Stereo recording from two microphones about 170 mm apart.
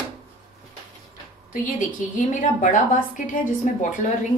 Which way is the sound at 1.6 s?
50° left (ahead or behind).